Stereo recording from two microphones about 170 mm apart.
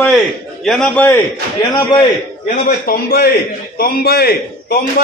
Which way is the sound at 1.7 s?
25° left (ahead or behind).